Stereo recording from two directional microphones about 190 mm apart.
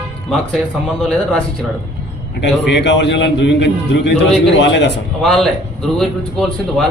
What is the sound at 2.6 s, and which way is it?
A man's voice, 65° left (ahead or behind).